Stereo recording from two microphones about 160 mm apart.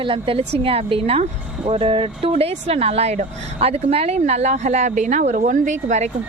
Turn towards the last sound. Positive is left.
turn(degrees=-50)  # may be behind; listen again after turning